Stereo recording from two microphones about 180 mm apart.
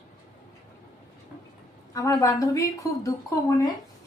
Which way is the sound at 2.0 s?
20° left (ahead or behind).